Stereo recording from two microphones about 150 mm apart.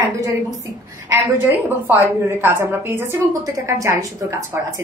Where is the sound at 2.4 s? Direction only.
15° right (ahead or behind).